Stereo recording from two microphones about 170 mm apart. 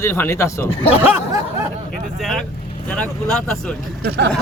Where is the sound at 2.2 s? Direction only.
Centre (ahead or behind).